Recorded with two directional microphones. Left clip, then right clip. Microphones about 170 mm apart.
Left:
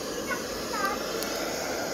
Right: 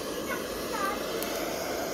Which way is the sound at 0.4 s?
10° right (ahead or behind).